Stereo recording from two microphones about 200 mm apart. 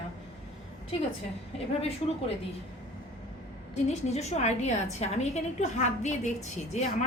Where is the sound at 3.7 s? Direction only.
35° left (ahead or behind).